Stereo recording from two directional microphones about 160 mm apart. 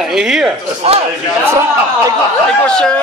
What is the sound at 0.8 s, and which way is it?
Speech, 40° right (ahead or behind).